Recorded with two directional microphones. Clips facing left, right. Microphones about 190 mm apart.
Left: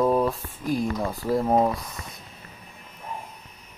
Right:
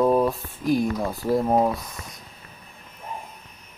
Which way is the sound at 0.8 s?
5° right (ahead or behind).